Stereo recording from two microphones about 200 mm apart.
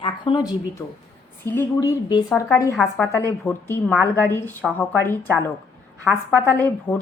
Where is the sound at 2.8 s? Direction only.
Centre (ahead or behind).